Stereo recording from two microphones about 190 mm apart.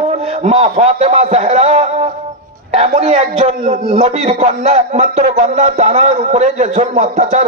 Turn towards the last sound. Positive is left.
turn(degrees=-40)  # may be behind; listen again after turning